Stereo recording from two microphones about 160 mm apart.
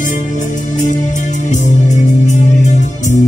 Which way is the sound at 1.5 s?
50° left (ahead or behind).